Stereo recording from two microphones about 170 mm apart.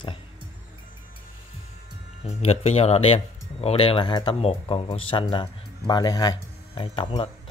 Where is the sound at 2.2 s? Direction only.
40° left (ahead or behind).